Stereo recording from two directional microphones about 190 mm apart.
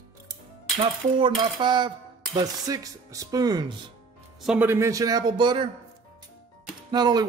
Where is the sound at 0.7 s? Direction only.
25° right (ahead or behind).